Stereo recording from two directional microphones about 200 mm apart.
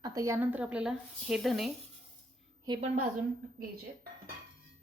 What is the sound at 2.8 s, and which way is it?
Speech, 35° right (ahead or behind).